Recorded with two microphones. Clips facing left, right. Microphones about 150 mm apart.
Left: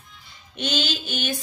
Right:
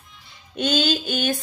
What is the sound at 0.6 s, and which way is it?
Music, 45° right (ahead or behind).